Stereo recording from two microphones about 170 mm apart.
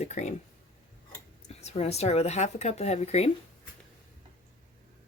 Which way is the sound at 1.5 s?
40° left (ahead or behind).